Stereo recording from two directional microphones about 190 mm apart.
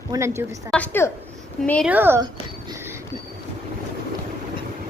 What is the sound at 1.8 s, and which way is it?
Speech, 10° right (ahead or behind).